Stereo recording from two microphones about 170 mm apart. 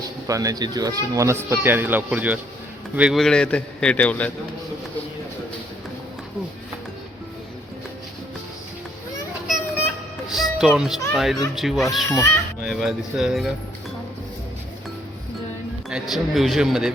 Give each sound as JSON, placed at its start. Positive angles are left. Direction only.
{"t": 0.3, "sound": "a man's voice", "side_deg": -20}
{"t": 10.2, "sound": "music", "side_deg": 0}
{"t": 11.1, "sound": "a man's voice", "side_deg": 0}
{"t": 12.0, "sound": "speech", "side_deg": 15}
{"t": 12.6, "sound": "a man's voice", "side_deg": 0}
{"t": 15.9, "sound": "a man's voice", "side_deg": 0}